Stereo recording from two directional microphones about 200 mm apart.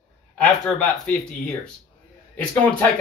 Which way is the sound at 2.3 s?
5° left (ahead or behind).